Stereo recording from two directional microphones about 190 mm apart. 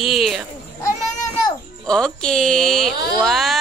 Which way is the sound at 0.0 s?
Centre (ahead or behind).